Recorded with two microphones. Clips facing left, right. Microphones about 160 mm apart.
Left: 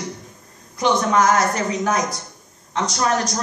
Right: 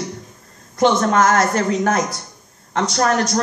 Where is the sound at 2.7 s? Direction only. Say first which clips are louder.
Right 4 dB; 55° right (ahead or behind).